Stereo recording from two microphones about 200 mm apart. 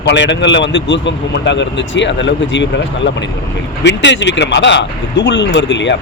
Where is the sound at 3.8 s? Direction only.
60° left (ahead or behind).